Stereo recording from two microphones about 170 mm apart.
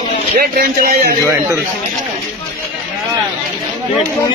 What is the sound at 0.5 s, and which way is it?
Speech, 60° right (ahead or behind).